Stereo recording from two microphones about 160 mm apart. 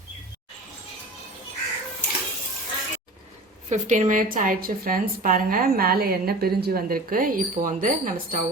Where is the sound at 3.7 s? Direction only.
50° right (ahead or behind).